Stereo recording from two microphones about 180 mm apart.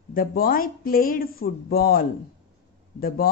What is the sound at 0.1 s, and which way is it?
Speech, 55° left (ahead or behind).